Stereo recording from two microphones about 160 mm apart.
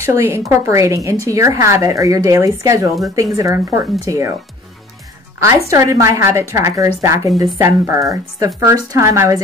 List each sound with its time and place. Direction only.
0.0 s speech: 15° right (ahead or behind)
5.4 s speech: 20° right (ahead or behind)